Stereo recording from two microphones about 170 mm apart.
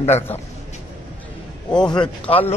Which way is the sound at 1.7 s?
5° left (ahead or behind).